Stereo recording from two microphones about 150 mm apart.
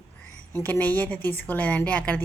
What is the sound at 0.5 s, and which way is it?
A woman's voice, 10° left (ahead or behind).